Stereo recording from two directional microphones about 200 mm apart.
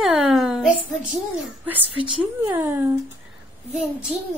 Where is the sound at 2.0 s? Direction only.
15° right (ahead or behind).